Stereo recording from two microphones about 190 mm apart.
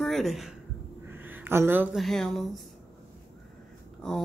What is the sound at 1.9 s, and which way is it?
Speech, centre (ahead or behind).